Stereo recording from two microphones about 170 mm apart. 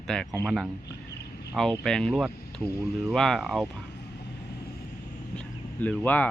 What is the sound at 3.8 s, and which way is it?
Vehicle, 80° left.